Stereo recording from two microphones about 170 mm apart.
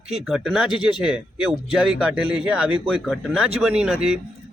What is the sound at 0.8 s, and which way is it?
Speech, 30° left (ahead or behind).